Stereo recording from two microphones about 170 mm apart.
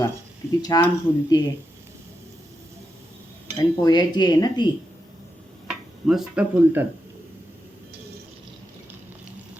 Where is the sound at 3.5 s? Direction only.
25° left (ahead or behind).